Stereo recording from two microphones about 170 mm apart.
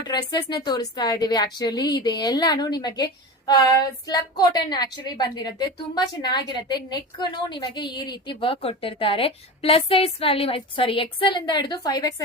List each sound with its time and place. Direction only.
0.1 s a woman's voice: 25° left (ahead or behind)